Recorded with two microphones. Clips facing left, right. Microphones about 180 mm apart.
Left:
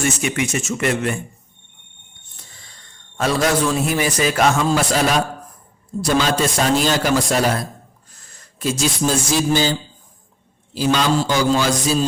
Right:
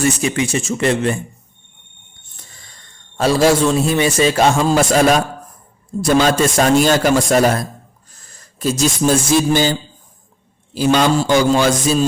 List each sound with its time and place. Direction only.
0.0 s speech: 30° right (ahead or behind)
3.2 s a man's voice: 30° right (ahead or behind); by 7.6 s 50° right (ahead or behind)
8.3 s a sound: 40° right (ahead or behind)
9.0 s music: 55° right (ahead or behind)
10.8 s a man's voice: 50° right (ahead or behind)